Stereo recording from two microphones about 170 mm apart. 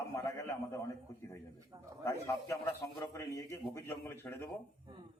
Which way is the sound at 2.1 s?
20° left (ahead or behind).